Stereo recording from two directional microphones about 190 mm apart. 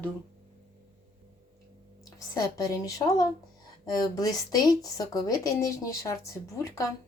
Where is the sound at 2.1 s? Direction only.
20° left (ahead or behind).